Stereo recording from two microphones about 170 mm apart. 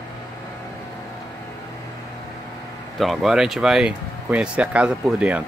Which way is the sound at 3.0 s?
Centre (ahead or behind).